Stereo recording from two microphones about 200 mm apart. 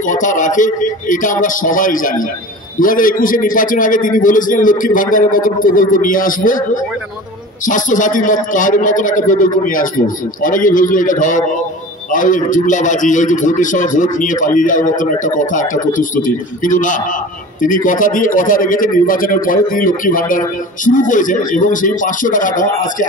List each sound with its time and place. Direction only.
0.0 s a man's voice: 40° left (ahead or behind)